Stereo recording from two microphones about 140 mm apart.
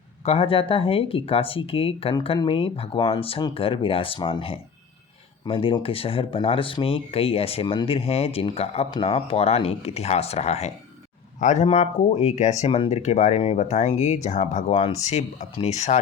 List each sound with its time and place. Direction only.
0.3 s speech: 40° left (ahead or behind)
15.1 s speech: 50° left (ahead or behind)